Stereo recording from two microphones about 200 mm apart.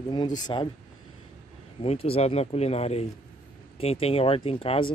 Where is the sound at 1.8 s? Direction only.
30° left (ahead or behind).